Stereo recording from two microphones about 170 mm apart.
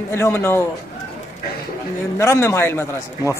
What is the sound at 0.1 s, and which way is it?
Speech, 15° left (ahead or behind).